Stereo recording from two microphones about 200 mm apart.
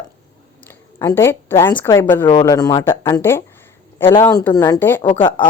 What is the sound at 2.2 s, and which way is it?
Speech, 25° left (ahead or behind).